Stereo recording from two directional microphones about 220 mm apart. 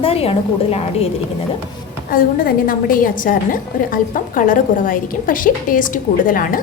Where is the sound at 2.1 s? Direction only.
40° left (ahead or behind).